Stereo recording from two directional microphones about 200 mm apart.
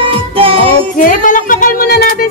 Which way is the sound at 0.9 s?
40° left (ahead or behind).